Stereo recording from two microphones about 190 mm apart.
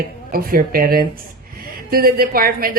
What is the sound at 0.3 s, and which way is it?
A man's voice, 50° right (ahead or behind).